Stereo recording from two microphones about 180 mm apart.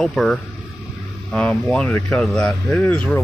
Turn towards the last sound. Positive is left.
turn(degrees=10)  # may be behind; listen again after turning